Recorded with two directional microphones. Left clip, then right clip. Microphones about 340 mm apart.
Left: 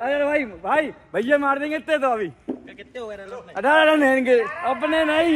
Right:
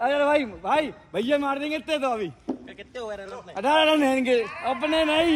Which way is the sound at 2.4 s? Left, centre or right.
Right.